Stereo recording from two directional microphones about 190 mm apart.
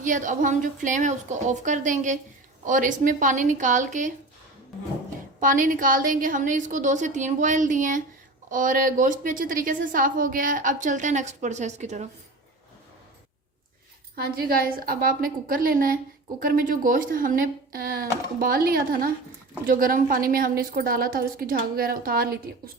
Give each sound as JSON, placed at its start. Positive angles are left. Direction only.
{"t": 0.0, "sound": "a woman's voice", "side_deg": -40}
{"t": 5.4, "sound": "a woman's voice", "side_deg": -45}
{"t": 14.2, "sound": "a woman's voice", "side_deg": -55}